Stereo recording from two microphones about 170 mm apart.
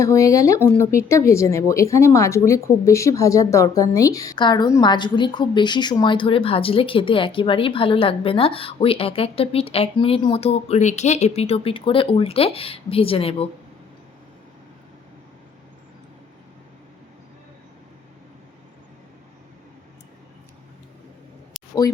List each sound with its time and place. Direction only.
0.0 s a woman's voice: 20° left (ahead or behind); by 13.5 s 35° left (ahead or behind)